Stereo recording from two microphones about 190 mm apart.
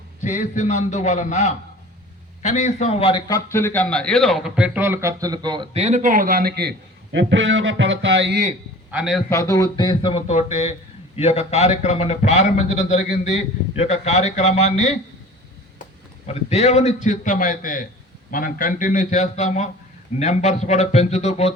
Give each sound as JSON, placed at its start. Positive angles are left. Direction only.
{"t": 0.2, "sound": "a man's voice", "side_deg": 40}
{"t": 8.9, "sound": "a man's voice", "side_deg": -5}
{"t": 9.3, "sound": "a man's voice", "side_deg": 15}
{"t": 16.2, "sound": "a man's voice", "side_deg": 35}